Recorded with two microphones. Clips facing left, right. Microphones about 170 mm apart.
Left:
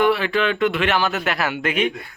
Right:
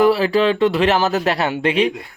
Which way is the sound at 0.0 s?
35° right (ahead or behind).